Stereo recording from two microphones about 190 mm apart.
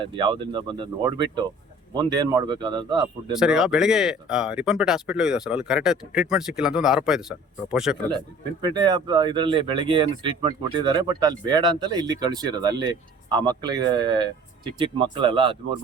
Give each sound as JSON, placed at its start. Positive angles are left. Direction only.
{"t": 0.0, "sound": "speech", "side_deg": -25}
{"t": 3.3, "sound": "speech", "side_deg": 0}
{"t": 8.6, "sound": "speech", "side_deg": -20}